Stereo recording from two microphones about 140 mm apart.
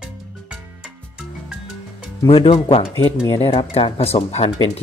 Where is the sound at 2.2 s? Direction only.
40° left (ahead or behind).